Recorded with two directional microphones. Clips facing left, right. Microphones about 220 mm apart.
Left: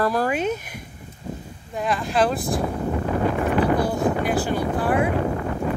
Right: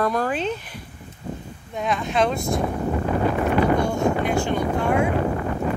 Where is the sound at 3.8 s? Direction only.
35° left (ahead or behind).